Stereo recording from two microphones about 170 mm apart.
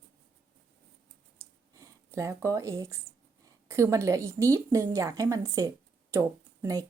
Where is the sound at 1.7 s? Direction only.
20° right (ahead or behind).